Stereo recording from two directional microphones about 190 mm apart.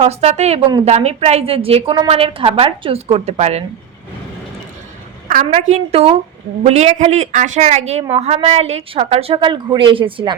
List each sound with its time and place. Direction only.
0.0 s a woman's voice: 35° right (ahead or behind)
5.7 s a woman's voice: 35° right (ahead or behind)